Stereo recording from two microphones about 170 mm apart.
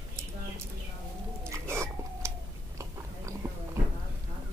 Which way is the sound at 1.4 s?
15° right (ahead or behind).